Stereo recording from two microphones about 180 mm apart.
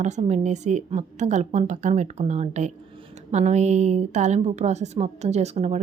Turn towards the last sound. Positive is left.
turn(degrees=-35)  # may be behind; listen again after turning